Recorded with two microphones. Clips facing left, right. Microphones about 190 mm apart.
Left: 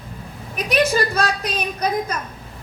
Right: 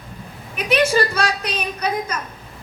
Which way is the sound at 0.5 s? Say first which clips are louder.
Right 1 dB; 35° left (ahead or behind).